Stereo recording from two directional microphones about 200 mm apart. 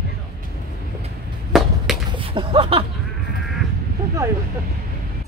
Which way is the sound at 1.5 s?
Centre (ahead or behind).